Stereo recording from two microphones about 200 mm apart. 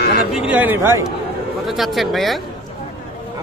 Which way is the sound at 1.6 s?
Centre (ahead or behind).